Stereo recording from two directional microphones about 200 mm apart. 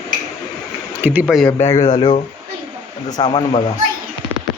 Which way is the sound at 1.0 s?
5° right (ahead or behind).